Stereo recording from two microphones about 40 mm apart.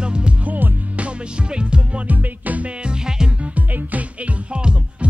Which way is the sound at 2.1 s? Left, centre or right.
Right.